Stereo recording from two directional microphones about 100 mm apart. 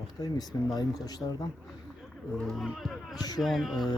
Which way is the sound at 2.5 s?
Centre (ahead or behind).